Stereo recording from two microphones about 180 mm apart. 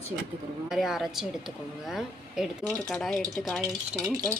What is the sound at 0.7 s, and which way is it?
Speech, centre (ahead or behind).